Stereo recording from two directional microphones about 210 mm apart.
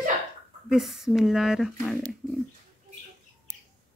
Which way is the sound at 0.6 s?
Centre (ahead or behind).